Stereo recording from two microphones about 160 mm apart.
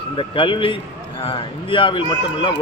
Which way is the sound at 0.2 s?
30° left (ahead or behind).